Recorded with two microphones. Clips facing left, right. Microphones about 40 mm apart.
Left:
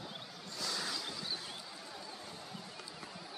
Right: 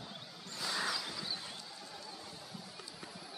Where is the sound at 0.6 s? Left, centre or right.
Centre.